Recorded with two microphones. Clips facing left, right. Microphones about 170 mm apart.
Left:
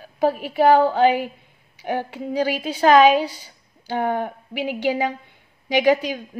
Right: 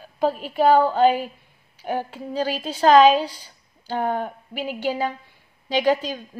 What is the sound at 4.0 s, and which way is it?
Speech, 65° left (ahead or behind).